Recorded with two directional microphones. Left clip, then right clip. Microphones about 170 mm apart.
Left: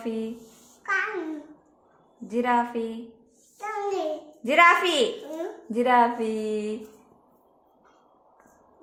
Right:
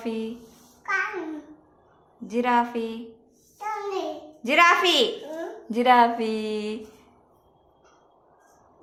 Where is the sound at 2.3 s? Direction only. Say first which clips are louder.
Right 1 dB; 5° left (ahead or behind).